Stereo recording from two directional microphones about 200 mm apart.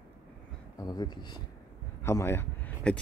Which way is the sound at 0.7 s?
20° left (ahead or behind).